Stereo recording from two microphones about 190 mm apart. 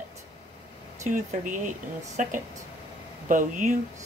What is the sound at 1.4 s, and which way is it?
Speech, 45° right (ahead or behind).